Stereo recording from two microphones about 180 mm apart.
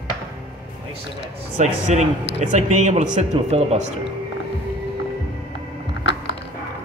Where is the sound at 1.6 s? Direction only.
40° right (ahead or behind).